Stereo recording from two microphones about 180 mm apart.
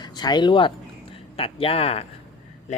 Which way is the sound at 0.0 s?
25° left (ahead or behind).